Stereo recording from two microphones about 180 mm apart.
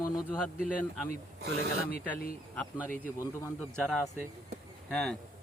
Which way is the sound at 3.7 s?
5° left (ahead or behind).